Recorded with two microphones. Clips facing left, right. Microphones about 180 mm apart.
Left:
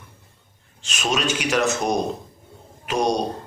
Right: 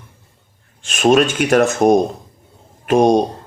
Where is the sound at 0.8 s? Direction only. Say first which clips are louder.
Right 11 dB; 50° right (ahead or behind).